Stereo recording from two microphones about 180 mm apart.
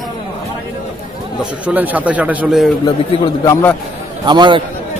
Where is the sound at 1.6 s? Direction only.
10° right (ahead or behind).